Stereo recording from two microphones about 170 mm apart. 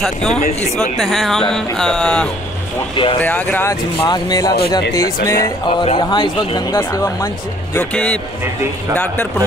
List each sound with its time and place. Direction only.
0.0 s music: centre (ahead or behind)
3.2 s speech: 10° left (ahead or behind)
7.7 s speech: 10° left (ahead or behind)